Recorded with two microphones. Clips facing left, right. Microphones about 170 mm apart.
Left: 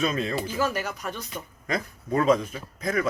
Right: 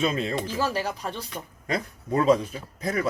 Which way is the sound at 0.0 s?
30° right (ahead or behind).